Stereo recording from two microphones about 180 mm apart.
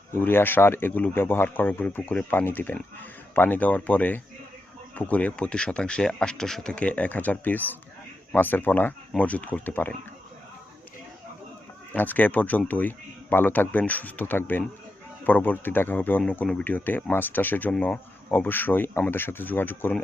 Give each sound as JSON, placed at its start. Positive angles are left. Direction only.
{"t": 0.1, "sound": "speech", "side_deg": 10}
{"t": 11.9, "sound": "speech", "side_deg": 10}